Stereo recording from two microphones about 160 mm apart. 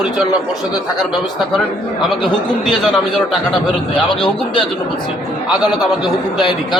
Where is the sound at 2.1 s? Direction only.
Centre (ahead or behind).